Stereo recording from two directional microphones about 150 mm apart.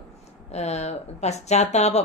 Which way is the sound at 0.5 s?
45° left (ahead or behind).